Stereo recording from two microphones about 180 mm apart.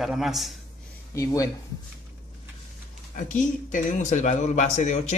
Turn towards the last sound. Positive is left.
turn(degrees=40)  # may be behind; listen again after turning